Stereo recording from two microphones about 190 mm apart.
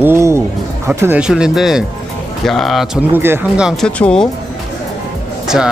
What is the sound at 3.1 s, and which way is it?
Speech, 10° right (ahead or behind).